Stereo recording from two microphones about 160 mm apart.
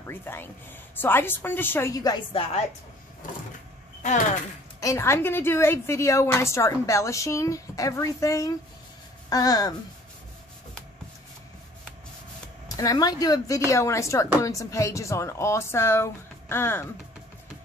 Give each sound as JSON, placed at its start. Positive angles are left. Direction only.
{"t": 0.0, "sound": "speech", "side_deg": 15}
{"t": 4.0, "sound": "speech", "side_deg": 50}
{"t": 4.7, "sound": "a woman's voice", "side_deg": 20}
{"t": 12.6, "sound": "speech", "side_deg": 20}